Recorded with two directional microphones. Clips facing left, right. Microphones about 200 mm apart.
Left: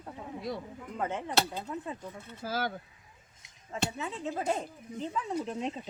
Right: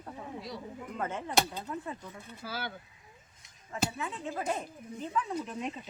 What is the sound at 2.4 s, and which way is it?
Speech, 40° left (ahead or behind).